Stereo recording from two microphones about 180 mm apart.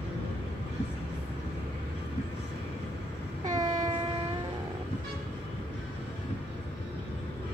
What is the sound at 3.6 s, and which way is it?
Train, 20° right (ahead or behind).